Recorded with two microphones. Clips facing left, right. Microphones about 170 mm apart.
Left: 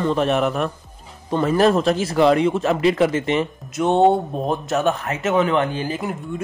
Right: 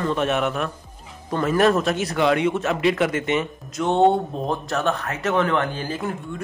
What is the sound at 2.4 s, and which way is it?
Speech, 30° left (ahead or behind).